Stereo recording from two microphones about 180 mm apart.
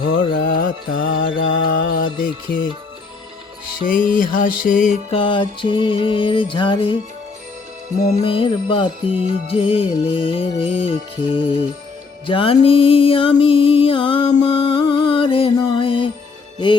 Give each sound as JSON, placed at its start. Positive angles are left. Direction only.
{"t": 0.2, "sound": "music", "side_deg": 50}
{"t": 4.1, "sound": "music", "side_deg": 50}
{"t": 5.1, "sound": "music", "side_deg": 30}
{"t": 8.2, "sound": "music", "side_deg": 30}